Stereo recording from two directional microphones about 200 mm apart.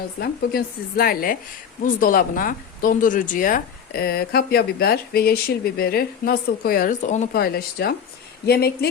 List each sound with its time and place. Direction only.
0.2 s speech: 50° left (ahead or behind)
7.4 s speech: 50° left (ahead or behind)